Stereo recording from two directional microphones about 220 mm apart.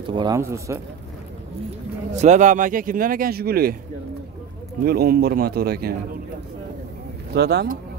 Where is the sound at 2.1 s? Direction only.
30° right (ahead or behind).